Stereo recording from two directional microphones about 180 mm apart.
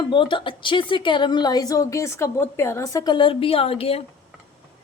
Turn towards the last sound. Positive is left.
turn(degrees=35)  # may be behind; listen again after turning